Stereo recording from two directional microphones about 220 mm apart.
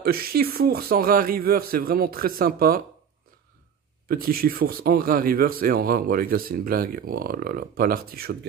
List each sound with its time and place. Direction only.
0.0 s speech: 45° right (ahead or behind)
4.1 s speech: 40° right (ahead or behind)